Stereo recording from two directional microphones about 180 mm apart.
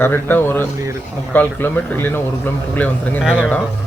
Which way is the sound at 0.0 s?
10° left (ahead or behind).